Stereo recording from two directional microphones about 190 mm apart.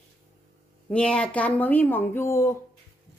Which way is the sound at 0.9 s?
5° left (ahead or behind).